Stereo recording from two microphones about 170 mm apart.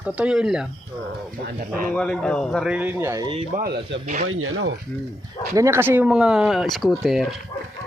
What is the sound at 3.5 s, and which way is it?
Speech, 60° right (ahead or behind).